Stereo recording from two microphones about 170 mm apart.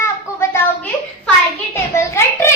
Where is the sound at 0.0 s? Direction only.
15° left (ahead or behind).